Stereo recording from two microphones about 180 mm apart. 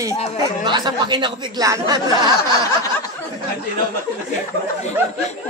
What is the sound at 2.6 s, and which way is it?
Snicker, 20° left (ahead or behind).